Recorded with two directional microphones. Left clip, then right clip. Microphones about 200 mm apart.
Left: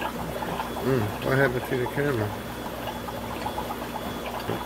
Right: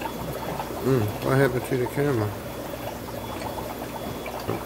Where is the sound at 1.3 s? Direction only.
10° right (ahead or behind).